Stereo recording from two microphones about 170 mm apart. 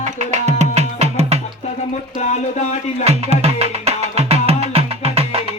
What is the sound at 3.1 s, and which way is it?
Music, 40° right (ahead or behind).